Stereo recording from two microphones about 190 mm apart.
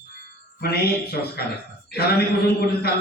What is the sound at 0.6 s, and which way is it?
Speech, 55° left (ahead or behind).